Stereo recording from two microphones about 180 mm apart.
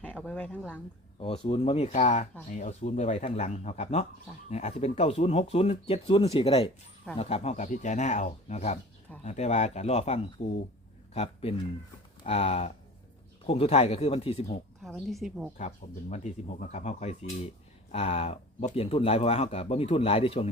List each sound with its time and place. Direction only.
0.0 s a sound: 10° left (ahead or behind)
1.2 s speech: 30° left (ahead or behind)
14.8 s a woman's voice: centre (ahead or behind)
15.5 s speech: 40° left (ahead or behind)